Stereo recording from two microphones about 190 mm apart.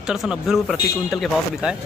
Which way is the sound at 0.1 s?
5° right (ahead or behind).